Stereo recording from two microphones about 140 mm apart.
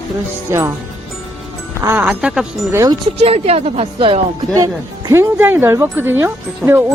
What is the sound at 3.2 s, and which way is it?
Speech, 45° right (ahead or behind).